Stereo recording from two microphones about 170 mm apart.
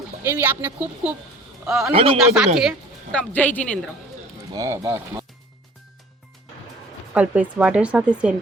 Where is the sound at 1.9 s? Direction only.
30° right (ahead or behind).